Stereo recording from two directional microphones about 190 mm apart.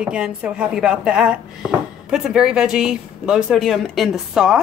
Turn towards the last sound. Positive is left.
turn(degrees=-5)  # may be behind; listen again after turning